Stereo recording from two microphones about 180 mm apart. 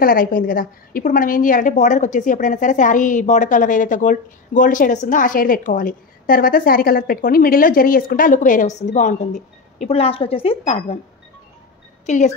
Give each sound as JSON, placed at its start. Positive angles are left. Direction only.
{"t": 0.0, "sound": "a woman's voice", "side_deg": 55}